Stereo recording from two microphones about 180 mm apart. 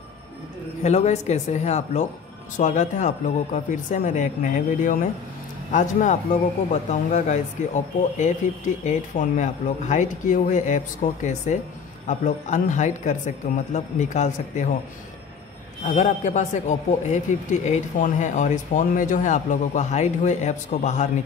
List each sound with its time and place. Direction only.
0.8 s a man's voice: 40° left (ahead or behind)
15.8 s a man's voice: 45° left (ahead or behind)